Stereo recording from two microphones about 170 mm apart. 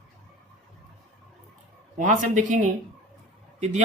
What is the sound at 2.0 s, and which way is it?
Speech, 50° right (ahead or behind).